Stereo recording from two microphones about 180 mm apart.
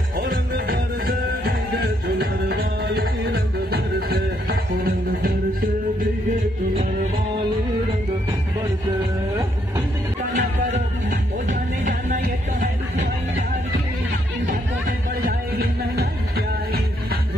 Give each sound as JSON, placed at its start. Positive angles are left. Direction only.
{"t": 0.2, "sound": "music", "side_deg": -50}
{"t": 10.3, "sound": "music", "side_deg": -45}
{"t": 14.5, "sound": "music", "side_deg": -50}